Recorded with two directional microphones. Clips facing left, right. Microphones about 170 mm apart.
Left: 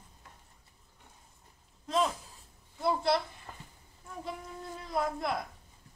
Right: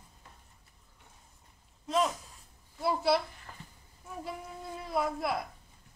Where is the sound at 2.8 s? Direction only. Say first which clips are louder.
Right 1 dB; 5° right (ahead or behind).